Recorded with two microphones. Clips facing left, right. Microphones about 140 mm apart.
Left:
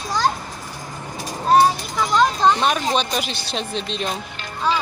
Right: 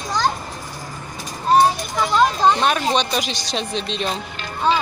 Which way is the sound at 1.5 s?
Centre (ahead or behind).